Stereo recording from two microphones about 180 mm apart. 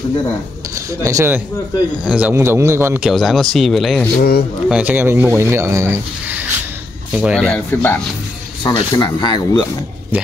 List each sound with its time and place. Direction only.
1.0 s speech: 15° right (ahead or behind); by 4.1 s centre (ahead or behind)
4.2 s speech: 60° left (ahead or behind)
4.6 s speech: 5° right (ahead or behind)
7.7 s speech: 10° left (ahead or behind)
8.6 s speech: 25° left (ahead or behind)